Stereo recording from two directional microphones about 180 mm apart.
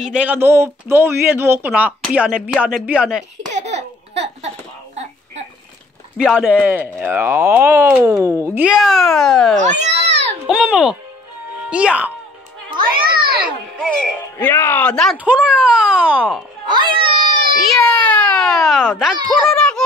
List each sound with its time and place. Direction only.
0.0 s speech: 5° right (ahead or behind)
3.5 s laughter: 35° right (ahead or behind)
6.1 s speech: 5° right (ahead or behind)
9.6 s baby cry: 40° right (ahead or behind)
10.4 s a child's voice: 5° right (ahead or behind)
12.7 s a sound: 25° right (ahead or behind)
13.7 s speech: 5° left (ahead or behind)
15.2 s a child's voice: 5° right (ahead or behind)
16.6 s a sound: 25° right (ahead or behind)
17.6 s a sound: 5° left (ahead or behind)
19.5 s children playing: 5° left (ahead or behind)